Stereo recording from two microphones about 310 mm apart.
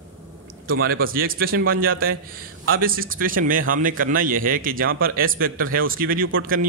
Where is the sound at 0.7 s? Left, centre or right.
Right.